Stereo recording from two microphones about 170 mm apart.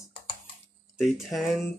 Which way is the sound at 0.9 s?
Centre (ahead or behind).